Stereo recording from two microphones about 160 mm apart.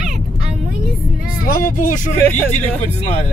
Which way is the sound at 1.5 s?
55° left (ahead or behind).